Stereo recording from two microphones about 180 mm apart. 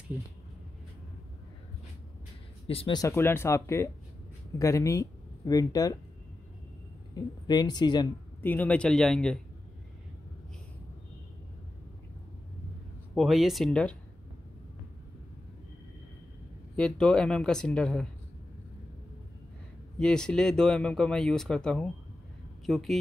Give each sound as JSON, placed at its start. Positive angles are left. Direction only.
{"t": 2.7, "sound": "speech", "side_deg": 30}
{"t": 3.0, "sound": "speech", "side_deg": 15}
{"t": 7.4, "sound": "speech", "side_deg": 25}
{"t": 8.4, "sound": "speech", "side_deg": 10}
{"t": 13.1, "sound": "speech", "side_deg": 0}
{"t": 16.7, "sound": "speech", "side_deg": 5}
{"t": 20.0, "sound": "speech", "side_deg": 5}